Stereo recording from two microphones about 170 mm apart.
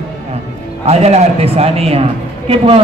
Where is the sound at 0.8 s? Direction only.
40° right (ahead or behind).